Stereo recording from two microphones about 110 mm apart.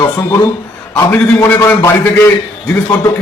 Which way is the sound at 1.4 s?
15° left (ahead or behind).